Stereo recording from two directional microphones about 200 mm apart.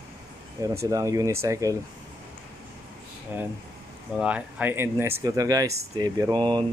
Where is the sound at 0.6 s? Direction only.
15° right (ahead or behind).